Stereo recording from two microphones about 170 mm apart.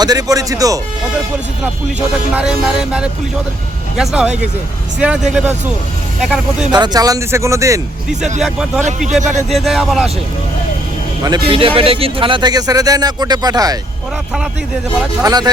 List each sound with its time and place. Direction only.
0.0 s speech: 20° right (ahead or behind)
2.3 s music: 5° right (ahead or behind)
4.9 s speech: 5° right (ahead or behind)
6.2 s music: 5° right (ahead or behind)
6.7 s speech: 25° right (ahead or behind)
8.2 s music: centre (ahead or behind)
11.4 s speech: 30° right (ahead or behind)
15.2 s speech: 25° right (ahead or behind)